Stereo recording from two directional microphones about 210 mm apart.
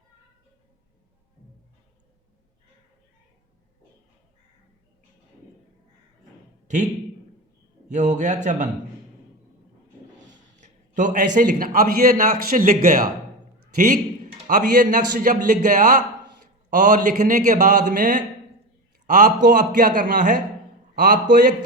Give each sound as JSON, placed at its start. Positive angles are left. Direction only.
{"t": 7.9, "sound": "a man's voice", "side_deg": -35}
{"t": 10.3, "sound": "a sound", "side_deg": -35}
{"t": 11.3, "sound": "a man's voice", "side_deg": -45}
{"t": 14.4, "sound": "a man's voice", "side_deg": -40}